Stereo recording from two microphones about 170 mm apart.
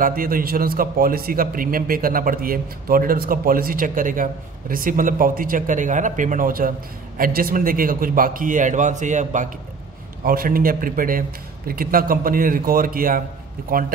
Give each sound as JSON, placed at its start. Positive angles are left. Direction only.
{"t": 0.0, "sound": "a man's voice", "side_deg": -55}
{"t": 10.2, "sound": "a man's voice", "side_deg": -60}